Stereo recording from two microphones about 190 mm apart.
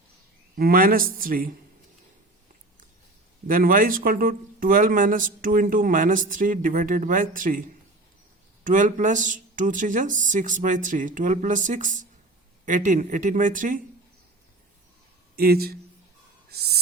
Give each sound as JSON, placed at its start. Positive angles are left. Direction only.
{"t": 0.5, "sound": "speech", "side_deg": -50}
{"t": 3.4, "sound": "speech", "side_deg": -45}
{"t": 8.6, "sound": "speech", "side_deg": -45}
{"t": 15.4, "sound": "speech", "side_deg": -55}
{"t": 16.5, "sound": "music", "side_deg": -55}